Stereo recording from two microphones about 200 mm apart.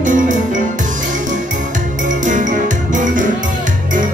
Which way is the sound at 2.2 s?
40° right (ahead or behind).